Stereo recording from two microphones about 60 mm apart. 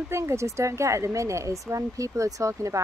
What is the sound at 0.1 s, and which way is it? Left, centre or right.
Speech, right.